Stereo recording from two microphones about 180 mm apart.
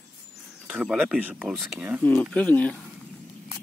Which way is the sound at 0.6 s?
5° right (ahead or behind).